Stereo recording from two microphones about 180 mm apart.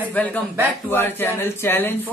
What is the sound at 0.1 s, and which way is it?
A man's voice, 10° left (ahead or behind).